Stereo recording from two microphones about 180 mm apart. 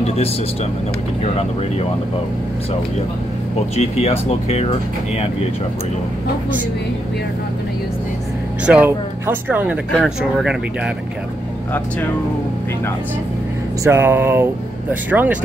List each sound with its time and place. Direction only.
1.2 s speech: 35° left (ahead or behind)
3.7 s speech: 35° left (ahead or behind)
8.6 s speech: 10° right (ahead or behind)
13.8 s speech: 15° right (ahead or behind)